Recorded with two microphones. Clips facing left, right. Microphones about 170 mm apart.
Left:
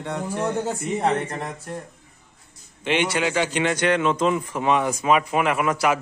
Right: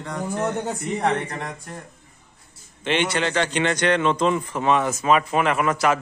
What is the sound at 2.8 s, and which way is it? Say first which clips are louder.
A man's voice: even; 10° left (ahead or behind).